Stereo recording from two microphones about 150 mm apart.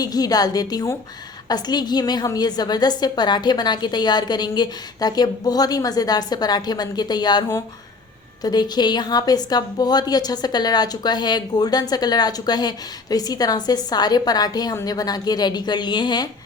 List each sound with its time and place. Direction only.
0.0 s a woman's voice: 25° left (ahead or behind)